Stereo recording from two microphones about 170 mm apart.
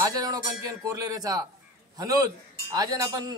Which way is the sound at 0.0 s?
20° right (ahead or behind).